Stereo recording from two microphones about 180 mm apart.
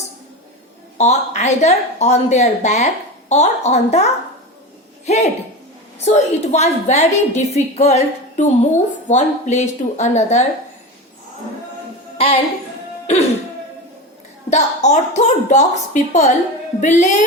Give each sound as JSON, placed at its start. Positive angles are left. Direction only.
{"t": 0.9, "sound": "a woman's voice", "side_deg": 40}
{"t": 12.1, "sound": "music", "side_deg": 30}
{"t": 14.5, "sound": "a woman's voice", "side_deg": 40}